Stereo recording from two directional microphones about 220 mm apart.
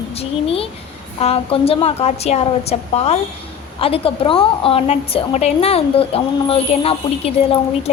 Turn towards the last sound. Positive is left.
turn(degrees=25)  # may be behind; listen again after turning